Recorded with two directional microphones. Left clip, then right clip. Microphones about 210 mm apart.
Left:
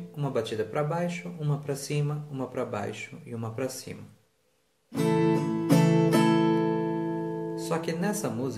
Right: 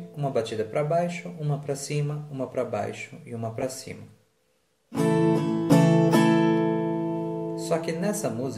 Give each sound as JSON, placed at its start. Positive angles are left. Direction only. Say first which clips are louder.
{"t": 0.2, "sound": "speech", "louder": "right 3 dB", "side_deg": 15}
{"t": 5.3, "sound": "music", "louder": "right 3 dB", "side_deg": -10}
{"t": 7.5, "sound": "speech", "louder": "right 5 dB", "side_deg": 15}